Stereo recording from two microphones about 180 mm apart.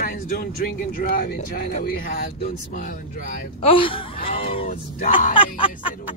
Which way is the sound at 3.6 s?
30° left (ahead or behind).